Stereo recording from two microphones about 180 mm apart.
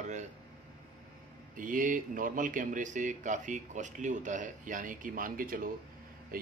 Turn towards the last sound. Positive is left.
turn(degrees=-50)  # may be behind; listen again after turning